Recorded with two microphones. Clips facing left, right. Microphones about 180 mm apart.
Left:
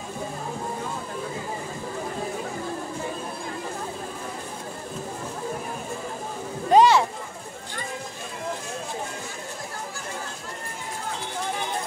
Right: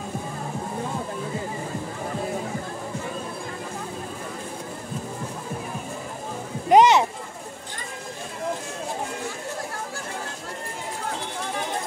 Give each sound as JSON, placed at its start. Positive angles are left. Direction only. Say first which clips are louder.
{"t": 6.7, "sound": "music", "louder": "right 1 dB", "side_deg": -20}